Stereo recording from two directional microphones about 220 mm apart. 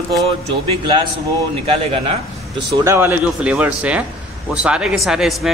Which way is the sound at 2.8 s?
10° right (ahead or behind).